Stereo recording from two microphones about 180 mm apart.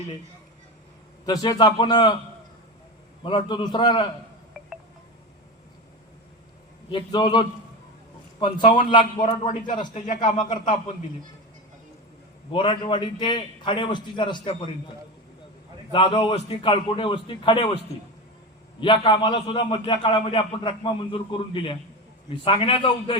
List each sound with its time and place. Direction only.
1.2 s a man's voice: 20° left (ahead or behind)
3.2 s a man's voice: 25° left (ahead or behind)
4.6 s wind chime: 5° right (ahead or behind)
6.9 s a man's voice: 25° left (ahead or behind)
12.5 s a man's voice: 25° left (ahead or behind)
18.8 s a man's voice: 30° left (ahead or behind)